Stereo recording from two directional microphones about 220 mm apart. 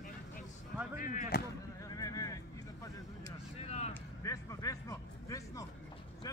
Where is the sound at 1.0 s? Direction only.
40° left (ahead or behind).